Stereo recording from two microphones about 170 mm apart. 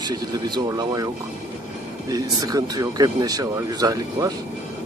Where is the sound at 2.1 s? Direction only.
20° right (ahead or behind).